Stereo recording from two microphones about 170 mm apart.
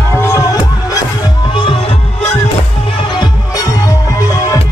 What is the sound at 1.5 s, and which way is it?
Music, 30° left (ahead or behind).